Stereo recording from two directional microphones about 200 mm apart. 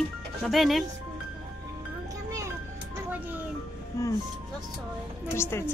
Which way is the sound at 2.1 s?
15° right (ahead or behind).